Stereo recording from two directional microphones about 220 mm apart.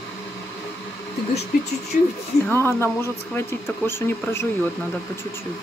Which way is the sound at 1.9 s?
40° left (ahead or behind).